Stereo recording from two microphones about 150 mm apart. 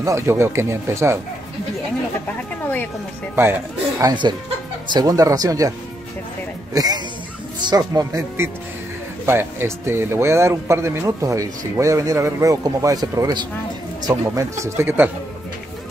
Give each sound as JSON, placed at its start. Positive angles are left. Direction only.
{"t": 0.0, "sound": "speech", "side_deg": -20}
{"t": 4.0, "sound": "speech", "side_deg": -30}
{"t": 6.7, "sound": "speech", "side_deg": -25}